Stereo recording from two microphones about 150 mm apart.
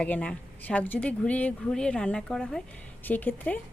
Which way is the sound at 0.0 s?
10° left (ahead or behind).